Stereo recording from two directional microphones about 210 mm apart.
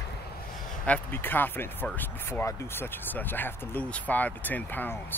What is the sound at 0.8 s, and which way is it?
Speech, 10° left (ahead or behind).